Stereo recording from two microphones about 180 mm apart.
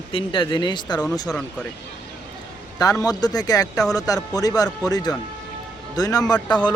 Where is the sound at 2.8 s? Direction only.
20° left (ahead or behind).